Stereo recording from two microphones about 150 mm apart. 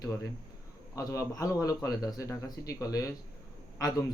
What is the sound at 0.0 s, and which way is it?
Speech, 20° left (ahead or behind).